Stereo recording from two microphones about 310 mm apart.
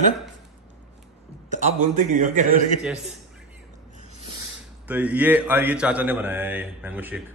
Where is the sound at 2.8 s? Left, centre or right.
Centre.